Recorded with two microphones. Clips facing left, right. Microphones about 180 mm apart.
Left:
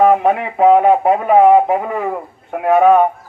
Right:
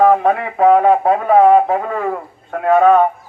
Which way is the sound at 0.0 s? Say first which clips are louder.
Even; 15° left (ahead or behind).